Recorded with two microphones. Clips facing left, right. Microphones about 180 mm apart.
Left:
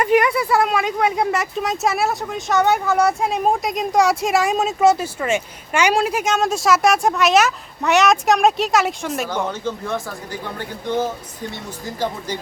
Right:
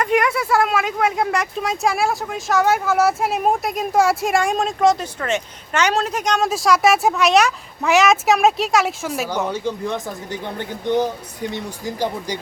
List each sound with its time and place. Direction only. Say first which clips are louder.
0.0 s speech: left 2 dB; centre (ahead or behind)
9.4 s speech: right 2 dB; 15° right (ahead or behind)